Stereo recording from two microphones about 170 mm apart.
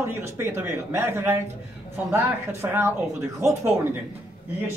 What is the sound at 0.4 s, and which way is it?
A man's voice, 15° right (ahead or behind).